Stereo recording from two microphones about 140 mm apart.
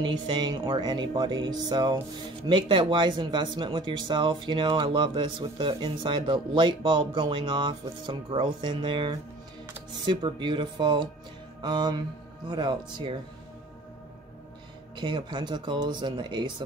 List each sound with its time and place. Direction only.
0.0 s speech: 30° right (ahead or behind)
15.0 s speech: 35° right (ahead or behind)